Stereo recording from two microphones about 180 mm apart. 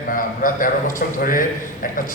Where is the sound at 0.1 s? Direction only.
50° left (ahead or behind).